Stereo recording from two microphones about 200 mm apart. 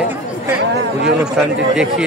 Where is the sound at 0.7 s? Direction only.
55° right (ahead or behind).